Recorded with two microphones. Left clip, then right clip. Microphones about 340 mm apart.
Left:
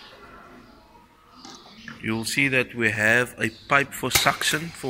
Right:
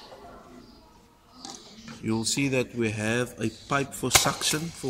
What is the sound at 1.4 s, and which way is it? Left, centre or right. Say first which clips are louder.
Speech: left 1 dB; centre.